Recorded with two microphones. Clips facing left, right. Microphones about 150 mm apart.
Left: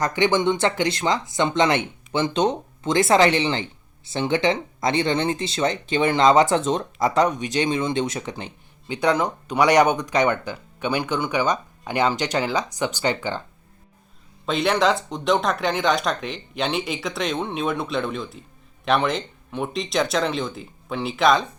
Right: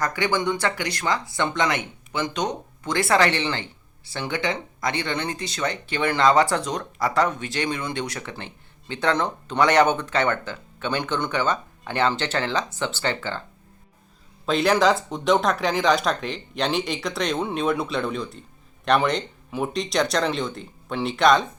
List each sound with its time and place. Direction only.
0.0 s speech: 20° left (ahead or behind)
14.4 s speech: centre (ahead or behind)